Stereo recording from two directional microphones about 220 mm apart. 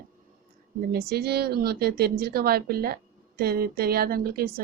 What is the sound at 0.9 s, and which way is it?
A woman's voice, 45° right (ahead or behind).